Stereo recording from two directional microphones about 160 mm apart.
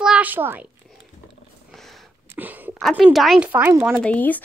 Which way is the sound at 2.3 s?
10° right (ahead or behind).